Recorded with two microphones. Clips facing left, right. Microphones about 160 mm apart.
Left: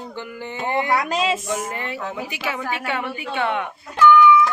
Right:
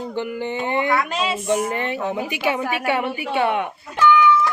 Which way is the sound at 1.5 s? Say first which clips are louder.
Right 5 dB; 20° right (ahead or behind).